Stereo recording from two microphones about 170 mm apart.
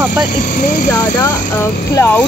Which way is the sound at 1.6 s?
15° left (ahead or behind).